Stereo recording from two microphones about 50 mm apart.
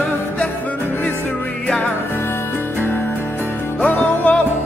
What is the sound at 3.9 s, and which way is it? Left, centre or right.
Music, left.